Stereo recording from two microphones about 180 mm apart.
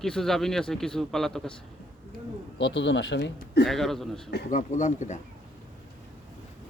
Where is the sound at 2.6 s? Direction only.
90° left; by 3.7 s 70° left (ahead or behind).